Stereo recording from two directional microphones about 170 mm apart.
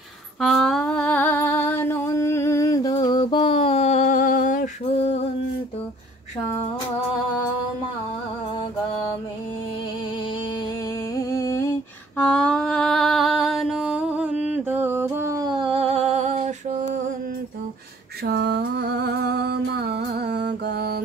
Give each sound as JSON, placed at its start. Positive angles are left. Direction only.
{"t": 0.4, "sound": "a sound", "side_deg": 5}
{"t": 11.1, "sound": "humming", "side_deg": 20}
{"t": 12.2, "sound": "music", "side_deg": 10}
{"t": 18.2, "sound": "music", "side_deg": -75}